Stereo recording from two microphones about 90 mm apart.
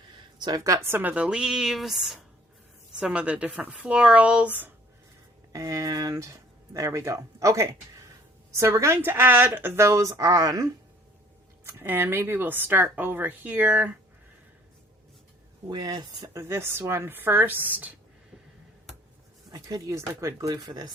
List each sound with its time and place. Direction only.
0.3 s a woman's voice: 55° right (ahead or behind)
0.6 s speech: 30° right (ahead or behind)
1.1 s speech: 10° right (ahead or behind)
5.5 s speech: 40° right (ahead or behind)
11.6 s speech: 25° right (ahead or behind)
15.7 s speech: 50° right (ahead or behind)
16.3 s speech: 30° right (ahead or behind)
19.5 s speech: 45° right (ahead or behind)
20.5 s speech: 50° right (ahead or behind)